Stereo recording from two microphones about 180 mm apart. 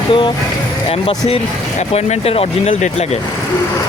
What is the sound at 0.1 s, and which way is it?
Speech, 25° left (ahead or behind).